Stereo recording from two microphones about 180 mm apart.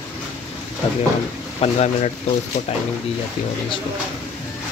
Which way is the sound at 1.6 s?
40° left (ahead or behind).